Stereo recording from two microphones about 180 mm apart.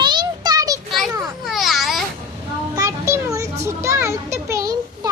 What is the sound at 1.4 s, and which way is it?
Babbling, centre (ahead or behind).